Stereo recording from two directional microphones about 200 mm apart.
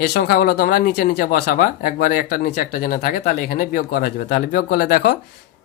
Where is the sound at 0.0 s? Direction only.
55° left (ahead or behind).